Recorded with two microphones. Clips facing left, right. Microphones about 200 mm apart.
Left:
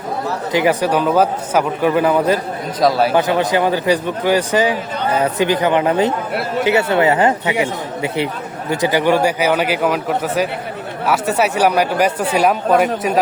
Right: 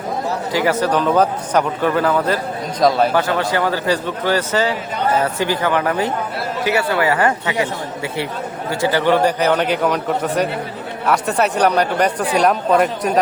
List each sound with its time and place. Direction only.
0.5 s a man's voice: 15° left (ahead or behind)
2.8 s speech: centre (ahead or behind)
3.2 s a man's voice: 15° left (ahead or behind)